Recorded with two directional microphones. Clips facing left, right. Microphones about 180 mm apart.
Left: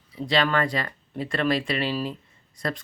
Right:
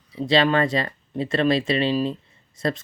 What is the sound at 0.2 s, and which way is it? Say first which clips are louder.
Speech: right 4 dB; 25° right (ahead or behind).